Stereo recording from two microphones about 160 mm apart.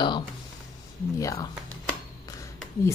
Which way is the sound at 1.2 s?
20° left (ahead or behind).